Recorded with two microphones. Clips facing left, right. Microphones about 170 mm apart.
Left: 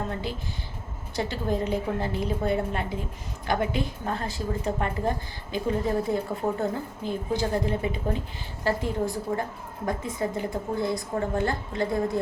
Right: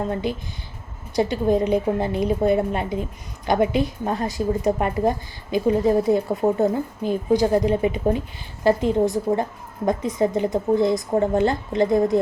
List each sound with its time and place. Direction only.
0.1 s a woman's voice: 15° right (ahead or behind)